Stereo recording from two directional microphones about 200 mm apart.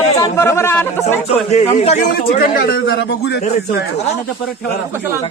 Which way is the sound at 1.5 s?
35° left (ahead or behind).